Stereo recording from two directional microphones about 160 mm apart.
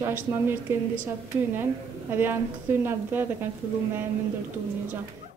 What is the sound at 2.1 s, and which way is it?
Speech, 15° right (ahead or behind).